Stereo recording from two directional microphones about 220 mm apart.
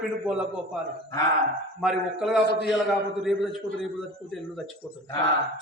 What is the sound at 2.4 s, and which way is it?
Speech, 45° left (ahead or behind).